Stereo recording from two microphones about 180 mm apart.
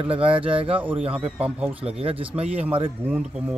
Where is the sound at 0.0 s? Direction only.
30° right (ahead or behind).